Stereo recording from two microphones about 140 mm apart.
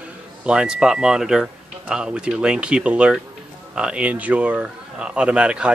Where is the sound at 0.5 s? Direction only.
5° right (ahead or behind).